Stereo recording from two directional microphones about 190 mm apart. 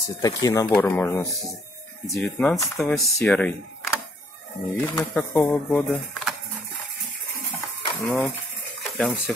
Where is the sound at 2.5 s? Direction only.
15° left (ahead or behind).